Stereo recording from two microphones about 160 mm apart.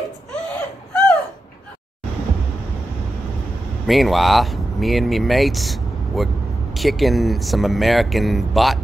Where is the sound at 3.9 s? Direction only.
Centre (ahead or behind).